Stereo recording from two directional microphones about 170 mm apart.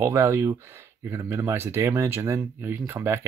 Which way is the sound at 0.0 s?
15° right (ahead or behind).